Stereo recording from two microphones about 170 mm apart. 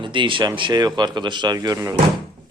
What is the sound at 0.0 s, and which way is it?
Speech, 30° right (ahead or behind).